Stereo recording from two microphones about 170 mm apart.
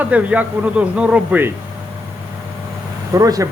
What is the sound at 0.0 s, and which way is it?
Speech, 10° right (ahead or behind).